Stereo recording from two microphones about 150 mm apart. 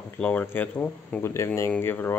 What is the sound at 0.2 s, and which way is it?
Speech, 10° left (ahead or behind).